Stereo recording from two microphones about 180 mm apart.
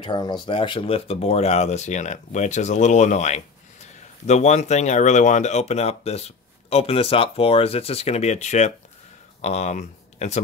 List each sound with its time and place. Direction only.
0.0 s speech: 25° left (ahead or behind)